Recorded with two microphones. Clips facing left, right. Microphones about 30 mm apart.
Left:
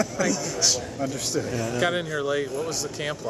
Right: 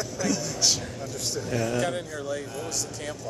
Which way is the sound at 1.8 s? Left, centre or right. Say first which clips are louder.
Left 4 dB; left.